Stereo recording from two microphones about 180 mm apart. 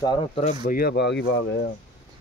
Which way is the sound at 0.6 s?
55° left (ahead or behind).